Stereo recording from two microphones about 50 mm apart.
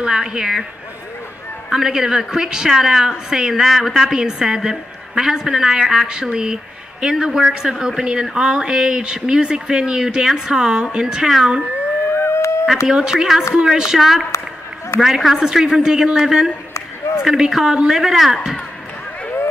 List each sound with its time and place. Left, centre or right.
0.0 s a woman's voice: centre
1.7 s a woman's voice: centre
11.2 s speech: centre
12.1 s a sound: left
12.8 s a woman's voice: centre